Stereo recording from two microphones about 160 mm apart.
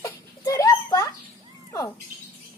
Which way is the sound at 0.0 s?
20° left (ahead or behind).